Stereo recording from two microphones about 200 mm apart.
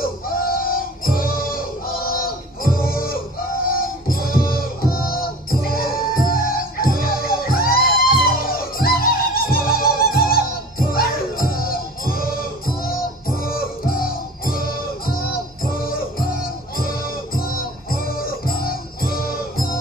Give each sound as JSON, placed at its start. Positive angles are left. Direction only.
{"t": 0.0, "sound": "music", "side_deg": 45}
{"t": 15.7, "sound": "music", "side_deg": 45}
{"t": 17.4, "sound": "music", "side_deg": 45}